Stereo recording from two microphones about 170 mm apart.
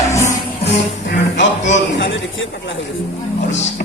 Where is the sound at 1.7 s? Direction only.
90° left.